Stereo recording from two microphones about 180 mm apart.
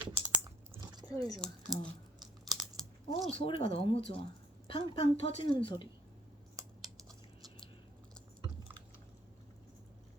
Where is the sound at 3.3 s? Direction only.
30° left (ahead or behind).